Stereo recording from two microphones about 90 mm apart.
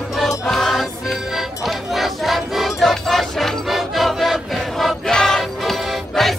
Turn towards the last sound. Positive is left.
turn(degrees=0)  # may be behind; listen again after turning